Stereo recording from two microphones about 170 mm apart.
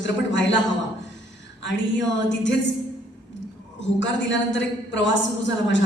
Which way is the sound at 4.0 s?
90° left.